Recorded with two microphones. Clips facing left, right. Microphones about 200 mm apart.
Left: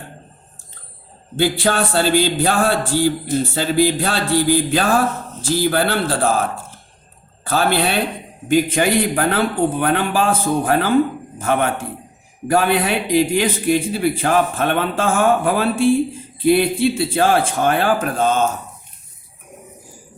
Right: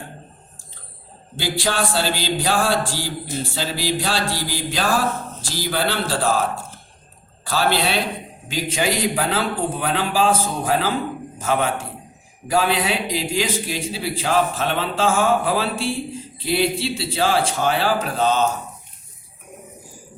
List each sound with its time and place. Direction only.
1.4 s a man's voice: 55° left (ahead or behind)
7.5 s a man's voice: 55° left (ahead or behind)